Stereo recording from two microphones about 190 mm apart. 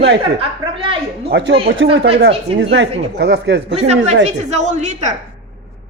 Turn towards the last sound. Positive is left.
turn(degrees=-40)  # may be behind; listen again after turning